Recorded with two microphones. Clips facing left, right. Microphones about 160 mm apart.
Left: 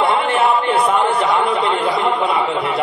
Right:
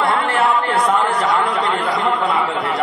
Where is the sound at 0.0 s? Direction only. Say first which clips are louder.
Left 2 dB; 20° left (ahead or behind).